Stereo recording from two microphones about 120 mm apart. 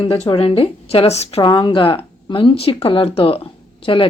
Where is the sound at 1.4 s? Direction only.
40° left (ahead or behind).